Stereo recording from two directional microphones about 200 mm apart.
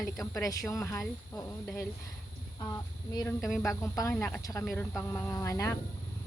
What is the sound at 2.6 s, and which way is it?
Speech, 15° left (ahead or behind).